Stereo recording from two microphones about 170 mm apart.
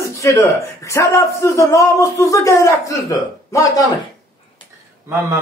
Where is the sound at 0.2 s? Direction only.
20° left (ahead or behind).